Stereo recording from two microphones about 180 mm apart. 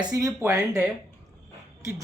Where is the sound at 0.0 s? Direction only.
20° right (ahead or behind).